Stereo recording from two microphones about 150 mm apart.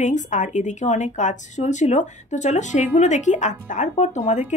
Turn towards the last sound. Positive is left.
turn(degrees=55)  # may be behind; listen again after turning